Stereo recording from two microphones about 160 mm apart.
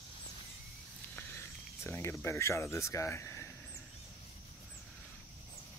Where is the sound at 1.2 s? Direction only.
15° left (ahead or behind).